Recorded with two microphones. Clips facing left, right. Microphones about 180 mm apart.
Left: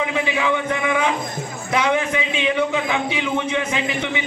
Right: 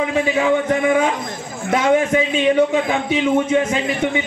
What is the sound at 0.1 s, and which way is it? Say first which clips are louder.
A man's voice: right 5 dB; 45° right (ahead or behind).